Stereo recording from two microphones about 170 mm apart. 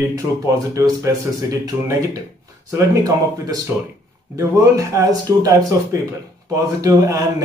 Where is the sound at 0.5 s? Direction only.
20° right (ahead or behind).